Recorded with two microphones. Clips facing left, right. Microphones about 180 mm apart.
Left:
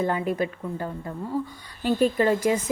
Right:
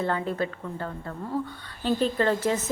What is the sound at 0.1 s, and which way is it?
Speech, 15° left (ahead or behind).